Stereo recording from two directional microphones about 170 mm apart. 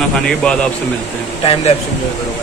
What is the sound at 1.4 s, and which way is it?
Speech, 35° left (ahead or behind).